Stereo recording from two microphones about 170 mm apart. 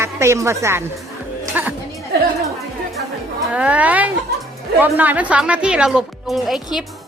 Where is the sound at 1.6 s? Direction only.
10° right (ahead or behind).